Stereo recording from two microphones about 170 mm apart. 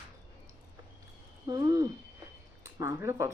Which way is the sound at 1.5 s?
20° right (ahead or behind).